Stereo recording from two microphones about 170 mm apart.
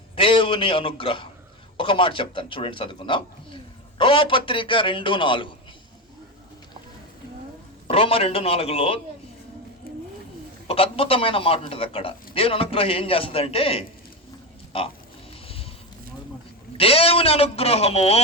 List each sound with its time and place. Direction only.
0.2 s a man's voice: 30° left (ahead or behind)
7.9 s a man's voice: 35° left (ahead or behind)
9.8 s vehicle: 60° left (ahead or behind)
10.7 s a man's voice: 35° left (ahead or behind)
15.4 s a sound: 35° left (ahead or behind)
16.7 s a man's voice: 35° left (ahead or behind)